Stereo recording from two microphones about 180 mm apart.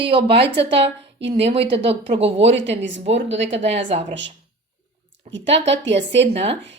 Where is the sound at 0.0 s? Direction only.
30° right (ahead or behind).